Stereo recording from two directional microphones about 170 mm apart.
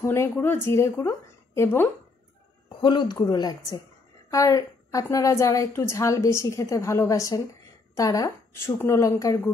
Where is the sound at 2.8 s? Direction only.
25° left (ahead or behind).